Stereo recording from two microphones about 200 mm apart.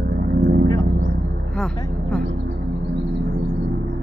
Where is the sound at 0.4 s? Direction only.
60° right (ahead or behind).